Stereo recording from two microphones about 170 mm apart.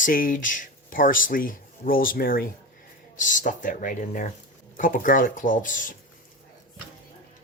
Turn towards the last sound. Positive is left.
turn(degrees=50)  # may be behind; listen again after turning